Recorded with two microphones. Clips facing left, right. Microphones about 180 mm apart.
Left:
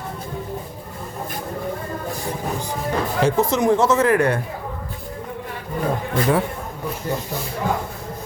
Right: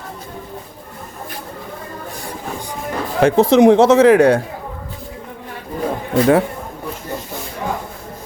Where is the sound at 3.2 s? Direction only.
65° right (ahead or behind); by 4.4 s 85° right.